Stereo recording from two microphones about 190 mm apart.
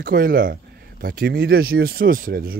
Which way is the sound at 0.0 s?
50° right (ahead or behind).